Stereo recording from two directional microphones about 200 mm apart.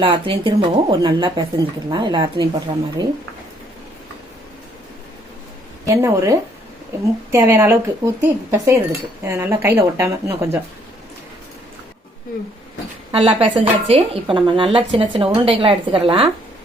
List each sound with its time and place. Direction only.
0.0 s speech: 25° right (ahead or behind)
5.8 s speech: 15° right (ahead or behind)
13.1 s speech: 25° right (ahead or behind)